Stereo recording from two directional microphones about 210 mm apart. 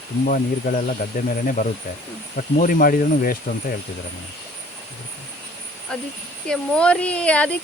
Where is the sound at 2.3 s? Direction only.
40° left (ahead or behind).